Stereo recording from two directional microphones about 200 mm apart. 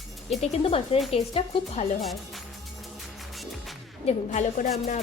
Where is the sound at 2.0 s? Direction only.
Centre (ahead or behind).